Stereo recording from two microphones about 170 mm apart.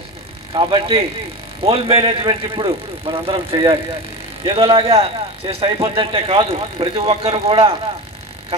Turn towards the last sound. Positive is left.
turn(degrees=-35)  # may be behind; listen again after turning